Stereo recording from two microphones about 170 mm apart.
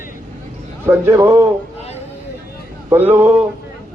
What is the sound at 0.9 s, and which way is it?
Speech, 15° right (ahead or behind).